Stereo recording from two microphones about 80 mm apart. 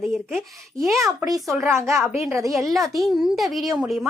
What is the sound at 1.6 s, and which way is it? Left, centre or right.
Speech, right.